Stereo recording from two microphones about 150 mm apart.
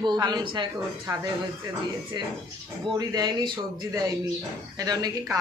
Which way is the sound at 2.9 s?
25° right (ahead or behind).